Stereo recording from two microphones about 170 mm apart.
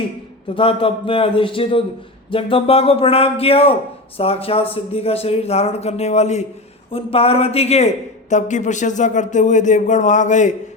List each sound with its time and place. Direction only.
0.4 s a man's voice: 30° left (ahead or behind)